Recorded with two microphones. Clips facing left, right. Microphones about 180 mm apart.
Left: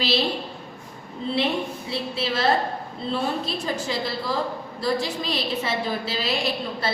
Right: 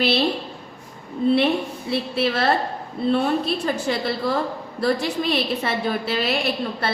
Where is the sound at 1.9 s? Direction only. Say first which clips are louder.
Right 7 dB; 60° right (ahead or behind).